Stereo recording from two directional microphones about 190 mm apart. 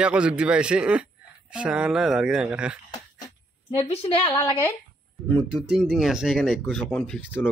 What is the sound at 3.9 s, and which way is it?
Speech, 35° left (ahead or behind).